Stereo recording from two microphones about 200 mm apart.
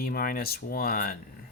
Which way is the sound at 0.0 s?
45° left (ahead or behind).